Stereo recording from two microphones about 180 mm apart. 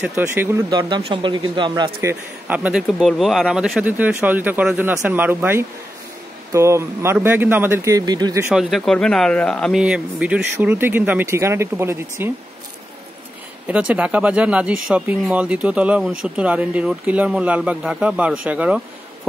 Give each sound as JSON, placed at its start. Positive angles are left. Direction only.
{"t": 0.0, "sound": "speech", "side_deg": -10}
{"t": 0.7, "sound": "speech", "side_deg": -25}
{"t": 2.0, "sound": "speech", "side_deg": -10}
{"t": 8.5, "sound": "speech", "side_deg": 0}
{"t": 13.7, "sound": "speech", "side_deg": -5}